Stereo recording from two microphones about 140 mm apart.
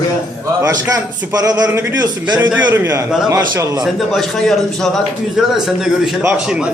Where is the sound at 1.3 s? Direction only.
25° right (ahead or behind).